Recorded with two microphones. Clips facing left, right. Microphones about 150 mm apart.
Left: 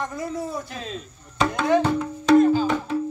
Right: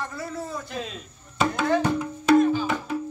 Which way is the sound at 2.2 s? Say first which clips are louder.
Left 3 dB; 5° right (ahead or behind).